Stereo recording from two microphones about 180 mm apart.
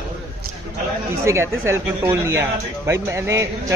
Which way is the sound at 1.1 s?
15° right (ahead or behind).